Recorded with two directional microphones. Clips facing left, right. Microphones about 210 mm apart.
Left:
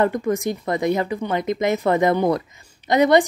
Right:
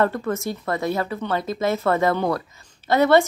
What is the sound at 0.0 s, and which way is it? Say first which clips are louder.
Speech: left 2 dB; 15° left (ahead or behind).